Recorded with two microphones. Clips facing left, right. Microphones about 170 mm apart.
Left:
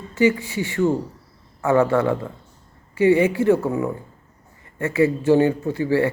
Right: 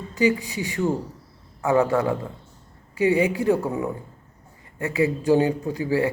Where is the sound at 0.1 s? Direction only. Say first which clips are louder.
Left 3 dB; 15° right (ahead or behind).